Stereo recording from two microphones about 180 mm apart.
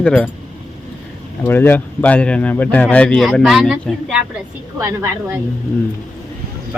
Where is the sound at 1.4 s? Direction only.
10° left (ahead or behind).